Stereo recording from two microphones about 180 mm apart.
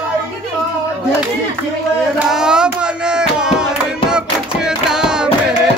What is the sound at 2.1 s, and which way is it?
Music, 5° right (ahead or behind).